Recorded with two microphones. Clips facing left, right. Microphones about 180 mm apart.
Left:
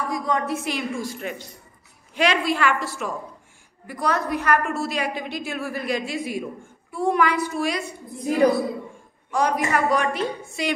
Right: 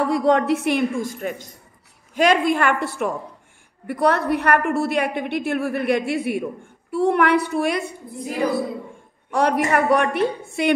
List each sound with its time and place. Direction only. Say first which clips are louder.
0.0 s a woman's voice: right 7 dB; 80° right; by 2.8 s 50° right (ahead or behind)
2.9 s a woman's voice: right 5 dB; 60° right (ahead or behind)
9.3 s a woman's voice: right 3 dB; 70° right (ahead or behind)